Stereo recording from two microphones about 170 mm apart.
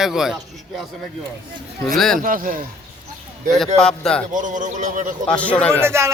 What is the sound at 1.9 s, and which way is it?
Speech, centre (ahead or behind).